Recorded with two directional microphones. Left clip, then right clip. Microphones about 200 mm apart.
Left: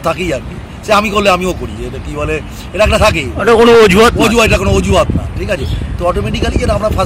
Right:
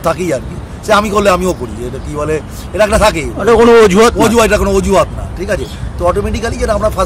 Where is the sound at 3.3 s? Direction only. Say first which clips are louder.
Even; 5° left (ahead or behind).